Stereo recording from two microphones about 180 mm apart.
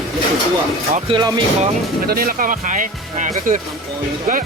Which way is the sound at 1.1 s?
30° right (ahead or behind).